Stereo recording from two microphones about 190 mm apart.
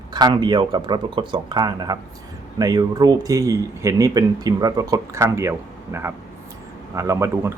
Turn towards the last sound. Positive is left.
turn(degrees=-15)  # may be behind; listen again after turning